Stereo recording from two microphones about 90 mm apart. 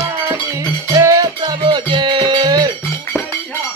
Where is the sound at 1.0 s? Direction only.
40° right (ahead or behind).